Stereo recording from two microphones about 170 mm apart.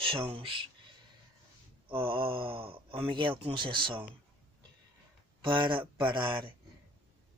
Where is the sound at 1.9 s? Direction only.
30° right (ahead or behind).